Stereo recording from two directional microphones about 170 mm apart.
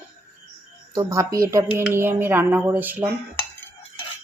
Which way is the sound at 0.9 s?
20° right (ahead or behind).